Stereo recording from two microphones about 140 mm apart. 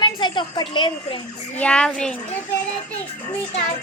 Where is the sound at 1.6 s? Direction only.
5° left (ahead or behind).